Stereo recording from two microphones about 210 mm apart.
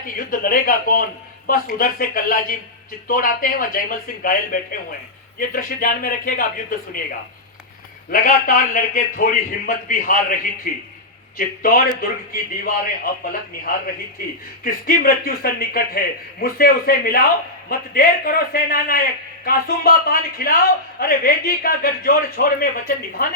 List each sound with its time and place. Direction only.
0.0 s a man's voice: 40° left (ahead or behind)
8.1 s a man's voice: 40° left (ahead or behind)
14.6 s a man's voice: 40° left (ahead or behind)